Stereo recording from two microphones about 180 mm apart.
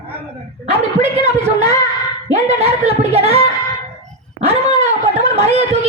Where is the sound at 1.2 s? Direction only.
35° right (ahead or behind).